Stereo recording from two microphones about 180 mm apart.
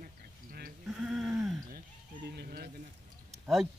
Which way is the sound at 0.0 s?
50° right (ahead or behind).